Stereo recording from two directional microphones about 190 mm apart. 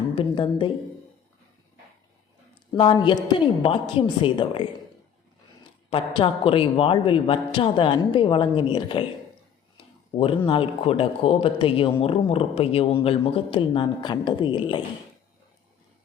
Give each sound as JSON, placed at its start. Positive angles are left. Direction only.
{"t": 0.2, "sound": "speech", "side_deg": 25}
{"t": 2.7, "sound": "speech", "side_deg": 25}
{"t": 5.9, "sound": "speech", "side_deg": 30}